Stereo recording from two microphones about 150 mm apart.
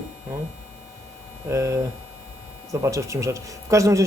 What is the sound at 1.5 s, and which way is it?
Speech, 20° right (ahead or behind).